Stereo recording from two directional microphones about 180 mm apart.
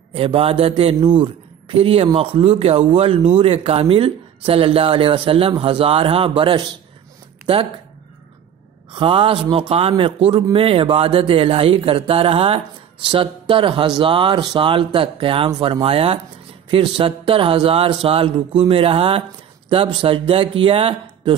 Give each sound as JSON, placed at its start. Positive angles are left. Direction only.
{"t": 0.1, "sound": "speech", "side_deg": -30}
{"t": 8.9, "sound": "a man's voice", "side_deg": -30}